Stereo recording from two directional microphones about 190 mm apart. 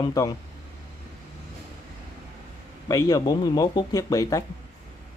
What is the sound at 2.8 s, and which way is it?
Speech, 20° left (ahead or behind).